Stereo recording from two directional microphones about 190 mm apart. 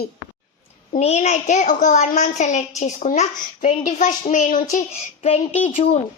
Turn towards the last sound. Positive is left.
turn(degrees=35)  # may be behind; listen again after turning